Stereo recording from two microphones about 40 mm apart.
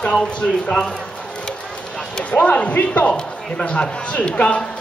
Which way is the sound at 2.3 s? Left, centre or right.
Left.